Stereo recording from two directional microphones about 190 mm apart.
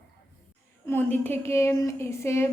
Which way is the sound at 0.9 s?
10° left (ahead or behind).